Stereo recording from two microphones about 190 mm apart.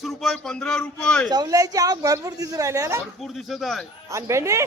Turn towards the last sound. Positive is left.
turn(degrees=-15)  # may be behind; listen again after turning